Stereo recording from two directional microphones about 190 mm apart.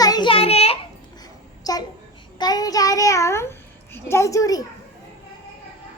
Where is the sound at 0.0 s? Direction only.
20° left (ahead or behind).